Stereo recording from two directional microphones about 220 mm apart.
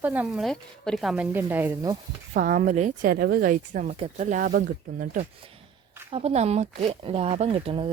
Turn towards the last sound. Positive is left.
turn(degrees=-25)  # may be behind; listen again after turning